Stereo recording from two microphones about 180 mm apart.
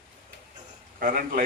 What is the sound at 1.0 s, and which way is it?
Speech, 50° right (ahead or behind).